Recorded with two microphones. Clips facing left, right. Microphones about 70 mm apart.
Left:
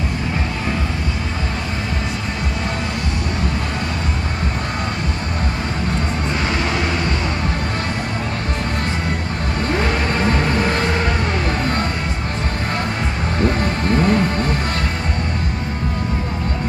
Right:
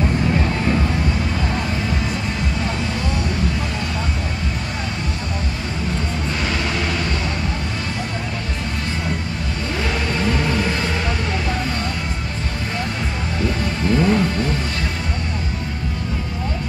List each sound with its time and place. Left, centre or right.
9.8 s music: left
13.4 s music: left